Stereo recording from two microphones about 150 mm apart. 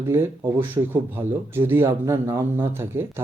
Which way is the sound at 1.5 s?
15° right (ahead or behind).